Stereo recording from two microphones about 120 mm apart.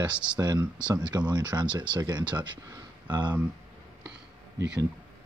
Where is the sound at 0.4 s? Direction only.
35° right (ahead or behind).